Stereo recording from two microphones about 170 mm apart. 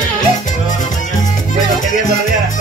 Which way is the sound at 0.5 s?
50° left (ahead or behind).